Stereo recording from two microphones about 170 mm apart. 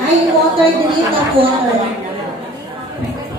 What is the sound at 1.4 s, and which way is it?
Speech, 30° right (ahead or behind).